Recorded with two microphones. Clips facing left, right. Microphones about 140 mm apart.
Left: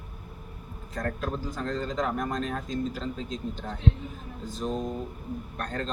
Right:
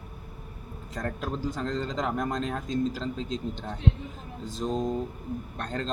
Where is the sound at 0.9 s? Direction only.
15° right (ahead or behind).